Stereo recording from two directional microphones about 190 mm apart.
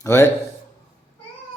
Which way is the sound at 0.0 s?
15° left (ahead or behind).